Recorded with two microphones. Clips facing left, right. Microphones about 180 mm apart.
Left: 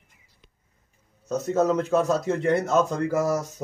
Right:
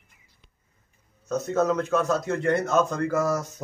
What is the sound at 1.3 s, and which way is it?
Speech, 10° left (ahead or behind).